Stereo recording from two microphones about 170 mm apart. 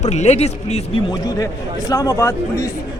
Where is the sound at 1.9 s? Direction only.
20° left (ahead or behind).